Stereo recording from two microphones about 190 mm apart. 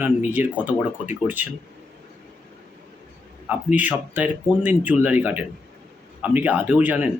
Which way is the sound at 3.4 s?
10° right (ahead or behind).